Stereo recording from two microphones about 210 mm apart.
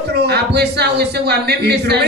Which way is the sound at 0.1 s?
50° right (ahead or behind).